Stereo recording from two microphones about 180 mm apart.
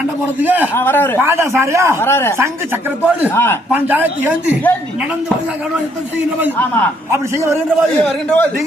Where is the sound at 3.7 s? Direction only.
10° right (ahead or behind).